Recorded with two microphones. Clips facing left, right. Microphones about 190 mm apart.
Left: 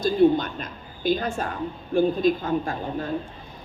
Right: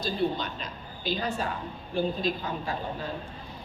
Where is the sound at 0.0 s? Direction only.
50° left (ahead or behind).